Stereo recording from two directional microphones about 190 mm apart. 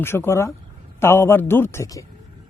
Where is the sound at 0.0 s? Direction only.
10° left (ahead or behind).